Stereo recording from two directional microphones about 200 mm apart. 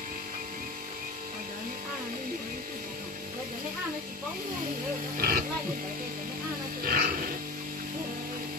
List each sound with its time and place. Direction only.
5.1 s speech: 50° right (ahead or behind)
6.8 s roaring cats: 45° right (ahead or behind)